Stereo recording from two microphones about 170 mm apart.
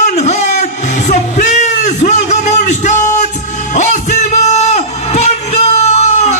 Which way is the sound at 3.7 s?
45° left (ahead or behind).